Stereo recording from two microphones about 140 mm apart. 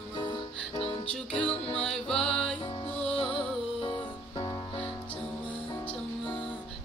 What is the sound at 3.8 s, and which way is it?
Music, 40° left (ahead or behind).